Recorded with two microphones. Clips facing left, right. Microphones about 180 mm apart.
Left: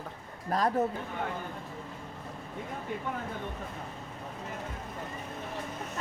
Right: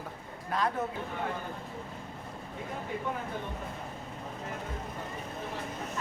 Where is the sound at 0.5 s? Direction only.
40° left (ahead or behind).